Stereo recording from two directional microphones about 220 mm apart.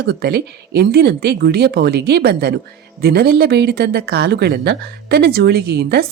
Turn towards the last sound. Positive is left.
turn(degrees=-45)  # may be behind; listen again after turning